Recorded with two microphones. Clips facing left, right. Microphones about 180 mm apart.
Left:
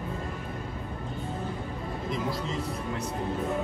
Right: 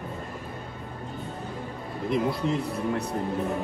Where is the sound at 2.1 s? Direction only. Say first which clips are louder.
Right 7 dB; 60° right (ahead or behind).